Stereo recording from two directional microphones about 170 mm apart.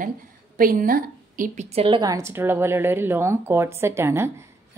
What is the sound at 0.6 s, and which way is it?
A woman's voice, 55° right (ahead or behind).